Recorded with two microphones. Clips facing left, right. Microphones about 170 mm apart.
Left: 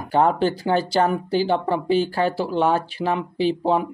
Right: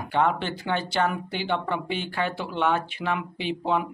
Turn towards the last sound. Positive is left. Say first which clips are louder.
# left 6 dB
turn(degrees=35)  # may be behind; listen again after turning